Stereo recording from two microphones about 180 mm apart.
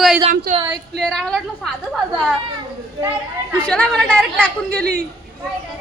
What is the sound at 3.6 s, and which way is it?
Speech, 5° left (ahead or behind).